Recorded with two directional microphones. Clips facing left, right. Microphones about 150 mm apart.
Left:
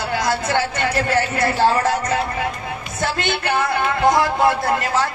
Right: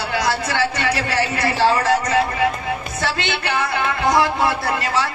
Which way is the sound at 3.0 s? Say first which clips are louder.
Left 5 dB; 50° left (ahead or behind).